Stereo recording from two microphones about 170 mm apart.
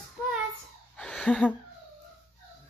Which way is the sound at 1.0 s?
5° left (ahead or behind).